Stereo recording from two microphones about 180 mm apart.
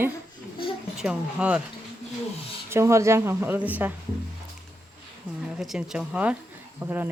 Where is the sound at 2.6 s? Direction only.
15° right (ahead or behind).